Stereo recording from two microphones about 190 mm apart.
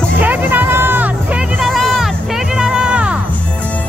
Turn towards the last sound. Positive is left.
turn(degrees=-5)  # may be behind; listen again after turning